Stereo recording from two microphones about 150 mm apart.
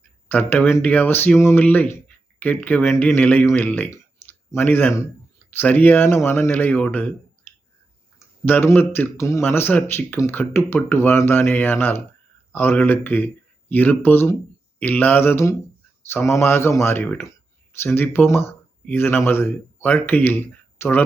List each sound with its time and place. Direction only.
0.3 s speech: 10° left (ahead or behind)
8.4 s speech: 15° left (ahead or behind)